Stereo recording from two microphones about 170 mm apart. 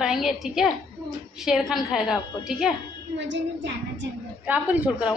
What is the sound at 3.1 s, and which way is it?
Speech, 90° right.